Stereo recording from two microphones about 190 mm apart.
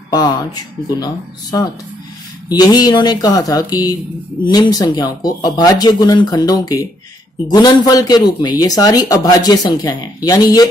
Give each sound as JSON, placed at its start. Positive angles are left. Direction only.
{"t": 0.1, "sound": "speech", "side_deg": 20}